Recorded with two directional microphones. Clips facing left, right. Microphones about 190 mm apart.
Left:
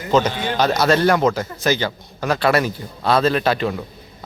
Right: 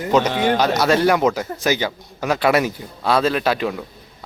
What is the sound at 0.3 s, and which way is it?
Speech, 75° right (ahead or behind).